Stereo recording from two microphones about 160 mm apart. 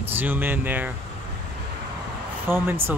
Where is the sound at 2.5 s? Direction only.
15° right (ahead or behind).